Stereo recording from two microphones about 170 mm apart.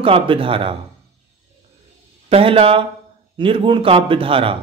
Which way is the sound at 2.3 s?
35° right (ahead or behind).